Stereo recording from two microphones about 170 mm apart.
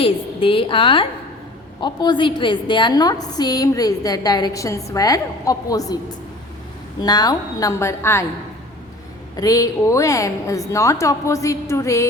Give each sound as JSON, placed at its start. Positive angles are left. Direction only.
{"t": 0.0, "sound": "a woman's voice", "side_deg": 30}
{"t": 9.3, "sound": "a woman's voice", "side_deg": 20}